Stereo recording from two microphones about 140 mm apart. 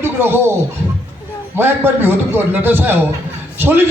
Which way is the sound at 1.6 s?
15° right (ahead or behind).